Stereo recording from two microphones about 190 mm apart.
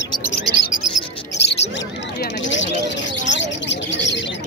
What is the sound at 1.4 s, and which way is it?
Bird, 60° left (ahead or behind).